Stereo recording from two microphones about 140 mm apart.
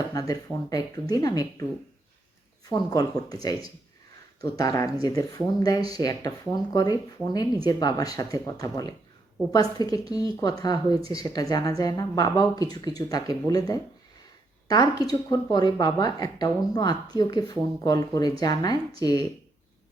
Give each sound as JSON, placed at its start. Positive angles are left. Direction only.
{"t": 0.1, "sound": "speech", "side_deg": 25}
{"t": 2.6, "sound": "speech", "side_deg": 25}